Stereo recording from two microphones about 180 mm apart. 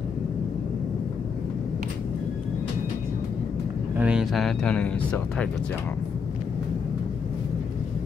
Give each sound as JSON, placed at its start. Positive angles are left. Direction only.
{"t": 3.9, "sound": "speech", "side_deg": -5}